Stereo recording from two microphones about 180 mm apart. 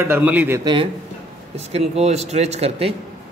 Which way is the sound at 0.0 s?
10° right (ahead or behind).